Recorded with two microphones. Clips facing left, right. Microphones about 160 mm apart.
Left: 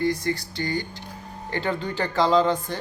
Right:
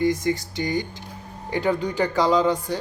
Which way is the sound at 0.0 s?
15° right (ahead or behind).